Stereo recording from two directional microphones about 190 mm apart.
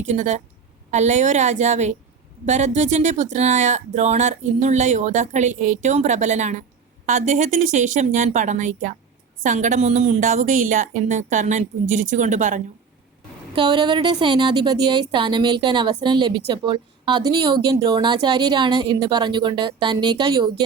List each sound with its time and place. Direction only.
0.2 s speech: 40° right (ahead or behind)
13.6 s a woman's voice: 25° right (ahead or behind)